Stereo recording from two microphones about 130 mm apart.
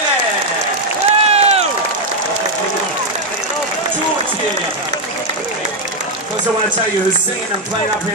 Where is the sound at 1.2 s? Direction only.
55° right (ahead or behind).